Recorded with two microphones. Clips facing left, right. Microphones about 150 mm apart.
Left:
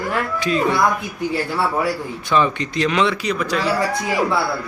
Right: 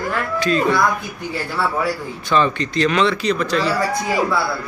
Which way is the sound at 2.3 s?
15° left (ahead or behind).